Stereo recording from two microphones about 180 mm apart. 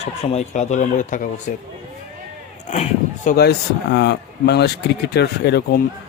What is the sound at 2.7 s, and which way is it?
Speech, 35° left (ahead or behind).